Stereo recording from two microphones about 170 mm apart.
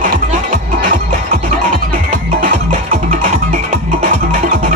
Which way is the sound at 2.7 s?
45° right (ahead or behind).